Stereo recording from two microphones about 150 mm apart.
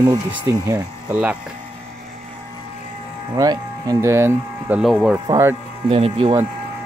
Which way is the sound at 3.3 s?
25° right (ahead or behind).